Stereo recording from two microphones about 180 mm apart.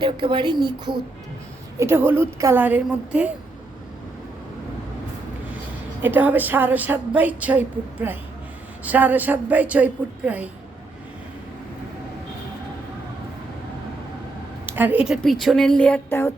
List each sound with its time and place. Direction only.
0.0 s speech: 25° right (ahead or behind)
1.8 s a woman's voice: 10° right (ahead or behind)
6.0 s a woman's voice: 10° right (ahead or behind)
14.7 s speech: 10° right (ahead or behind); by 16.3 s 15° left (ahead or behind)